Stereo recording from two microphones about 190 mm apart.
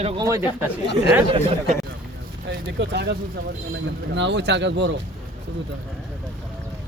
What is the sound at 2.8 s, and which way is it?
Speech, 65° right (ahead or behind).